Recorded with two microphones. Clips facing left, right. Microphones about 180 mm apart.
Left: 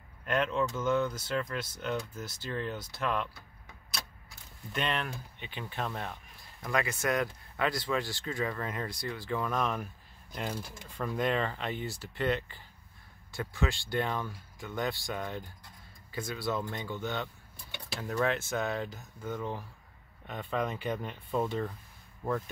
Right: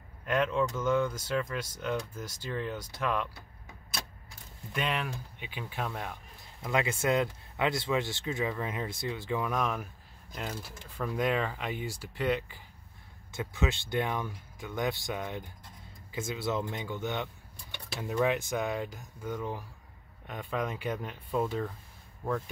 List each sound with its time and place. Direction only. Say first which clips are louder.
0.2 s speech: right 1 dB; 10° right (ahead or behind)
4.7 s speech: even; 10° right (ahead or behind)
6.6 s speech: right 2 dB; 20° right (ahead or behind); by 21.7 s 5° right (ahead or behind)